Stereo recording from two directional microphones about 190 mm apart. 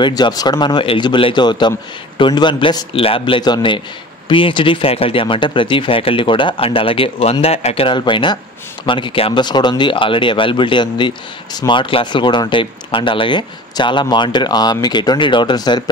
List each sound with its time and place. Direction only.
0.0 s speech: 20° left (ahead or behind)